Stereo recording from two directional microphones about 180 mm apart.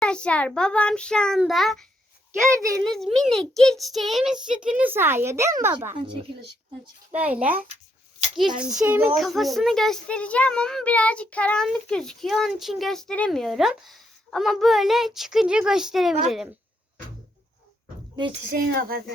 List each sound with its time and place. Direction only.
0.0 s a child's voice: 5° left (ahead or behind)
2.4 s a child's voice: 15° right (ahead or behind)
3.2 s a child's voice: centre (ahead or behind)
7.1 s a child's voice: 10° right (ahead or behind)
9.1 s a child's voice: centre (ahead or behind)
18.5 s speech: 55° right (ahead or behind)